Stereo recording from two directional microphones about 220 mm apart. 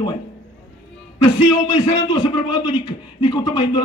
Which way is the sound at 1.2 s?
20° left (ahead or behind).